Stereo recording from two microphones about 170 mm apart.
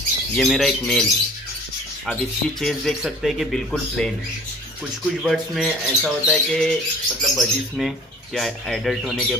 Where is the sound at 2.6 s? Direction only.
Centre (ahead or behind).